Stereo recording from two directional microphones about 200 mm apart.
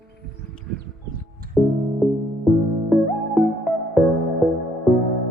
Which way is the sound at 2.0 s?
Centre (ahead or behind).